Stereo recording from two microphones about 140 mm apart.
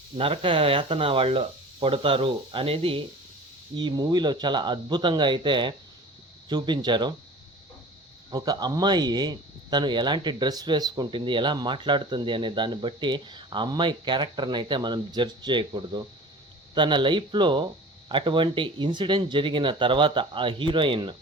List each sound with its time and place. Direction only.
0.2 s speech: 40° right (ahead or behind)
3.8 s speech: 30° right (ahead or behind)
8.3 s speech: 30° right (ahead or behind)